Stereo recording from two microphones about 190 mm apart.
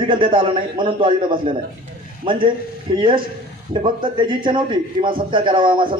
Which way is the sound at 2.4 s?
25° right (ahead or behind).